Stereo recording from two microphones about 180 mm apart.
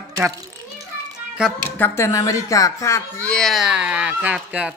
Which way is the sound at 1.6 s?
10° left (ahead or behind).